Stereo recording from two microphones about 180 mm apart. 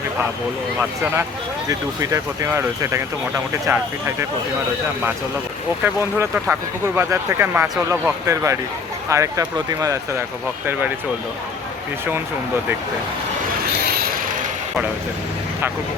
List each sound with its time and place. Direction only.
2.0 s speech: 15° right (ahead or behind)
5.8 s speech: 15° right (ahead or behind)
13.7 s vehicle: 60° right (ahead or behind)